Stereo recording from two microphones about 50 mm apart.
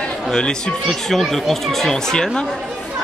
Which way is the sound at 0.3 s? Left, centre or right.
Centre.